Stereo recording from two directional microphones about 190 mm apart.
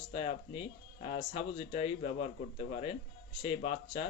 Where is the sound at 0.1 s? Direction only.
30° left (ahead or behind).